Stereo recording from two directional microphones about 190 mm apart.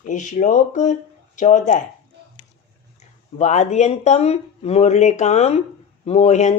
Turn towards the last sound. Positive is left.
turn(degrees=35)  # may be behind; listen again after turning